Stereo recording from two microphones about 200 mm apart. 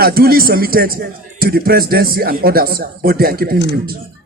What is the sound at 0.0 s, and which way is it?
Speech, 50° right (ahead or behind).